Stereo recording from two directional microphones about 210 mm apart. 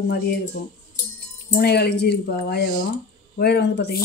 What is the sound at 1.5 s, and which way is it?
Speech, 50° left (ahead or behind).